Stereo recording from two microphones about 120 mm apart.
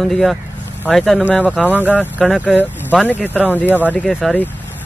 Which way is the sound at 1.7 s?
15° right (ahead or behind).